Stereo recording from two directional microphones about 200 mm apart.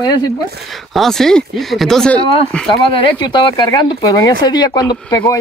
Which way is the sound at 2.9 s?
25° left (ahead or behind).